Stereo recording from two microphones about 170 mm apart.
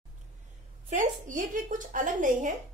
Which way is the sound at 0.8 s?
50° right (ahead or behind).